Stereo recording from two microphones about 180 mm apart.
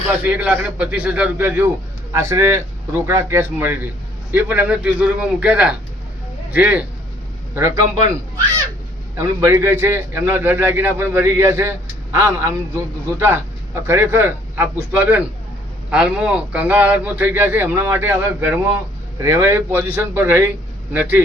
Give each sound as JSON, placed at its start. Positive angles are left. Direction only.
{"t": 0.3, "sound": "a man's voice", "side_deg": -10}